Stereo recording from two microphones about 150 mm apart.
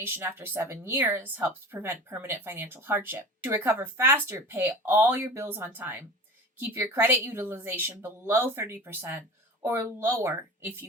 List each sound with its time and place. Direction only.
0.0 s speech: 15° right (ahead or behind)